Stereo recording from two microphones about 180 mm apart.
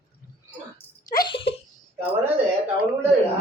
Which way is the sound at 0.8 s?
10° left (ahead or behind).